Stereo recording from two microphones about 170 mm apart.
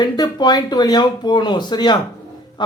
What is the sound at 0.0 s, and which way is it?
Speech, 25° left (ahead or behind).